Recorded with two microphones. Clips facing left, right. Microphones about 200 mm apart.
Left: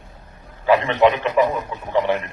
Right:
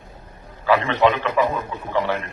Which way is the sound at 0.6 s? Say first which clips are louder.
Left 2 dB; 15° left (ahead or behind).